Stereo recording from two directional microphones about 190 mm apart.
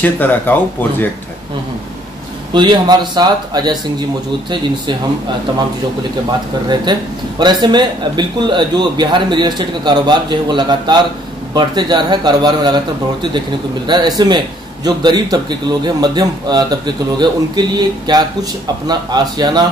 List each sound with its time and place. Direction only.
0.0 s speech: 10° left (ahead or behind)
2.5 s speech: 25° right (ahead or behind)
6.7 s speech: 25° right (ahead or behind)